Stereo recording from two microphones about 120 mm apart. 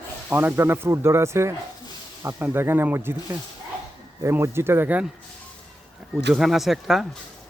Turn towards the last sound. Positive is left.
turn(degrees=0)  # may be behind; listen again after turning